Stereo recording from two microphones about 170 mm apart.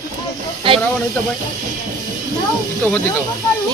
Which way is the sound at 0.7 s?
30° right (ahead or behind).